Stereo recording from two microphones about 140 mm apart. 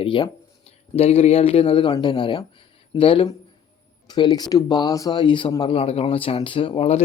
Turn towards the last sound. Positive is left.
turn(degrees=45)  # may be behind; listen again after turning